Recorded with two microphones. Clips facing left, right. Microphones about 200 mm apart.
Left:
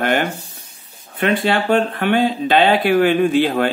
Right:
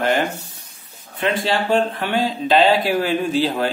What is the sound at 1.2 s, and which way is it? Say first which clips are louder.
Speech: left 3 dB; 60° left (ahead or behind).